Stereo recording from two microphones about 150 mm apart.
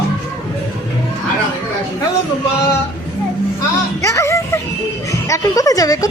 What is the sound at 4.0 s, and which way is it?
Music, 20° left (ahead or behind).